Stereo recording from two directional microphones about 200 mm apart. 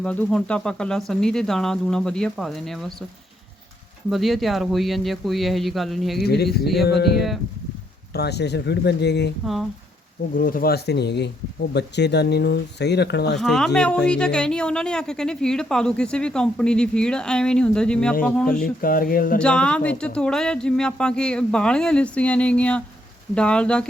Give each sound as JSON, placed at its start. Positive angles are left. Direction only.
{"t": 0.0, "sound": "a woman's voice", "side_deg": 5}
{"t": 4.1, "sound": "a woman's voice", "side_deg": 0}
{"t": 6.2, "sound": "speech", "side_deg": 55}
{"t": 8.1, "sound": "speech", "side_deg": 55}
{"t": 10.3, "sound": "speech", "side_deg": 45}
{"t": 13.4, "sound": "a woman's voice", "side_deg": 0}
{"t": 18.6, "sound": "speech", "side_deg": 45}
{"t": 19.4, "sound": "a woman's voice", "side_deg": 5}